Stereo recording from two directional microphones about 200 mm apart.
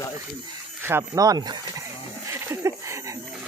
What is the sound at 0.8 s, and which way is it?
Speech, 15° right (ahead or behind).